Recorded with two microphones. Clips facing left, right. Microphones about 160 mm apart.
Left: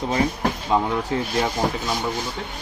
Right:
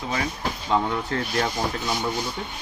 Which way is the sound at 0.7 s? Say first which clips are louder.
Left 1 dB; 15° left (ahead or behind).